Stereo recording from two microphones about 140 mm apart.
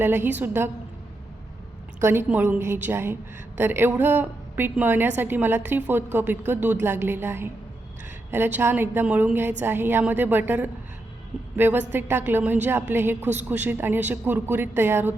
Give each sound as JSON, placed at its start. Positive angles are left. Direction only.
{"t": 0.0, "sound": "a woman's voice", "side_deg": -15}
{"t": 2.0, "sound": "a woman's voice", "side_deg": -15}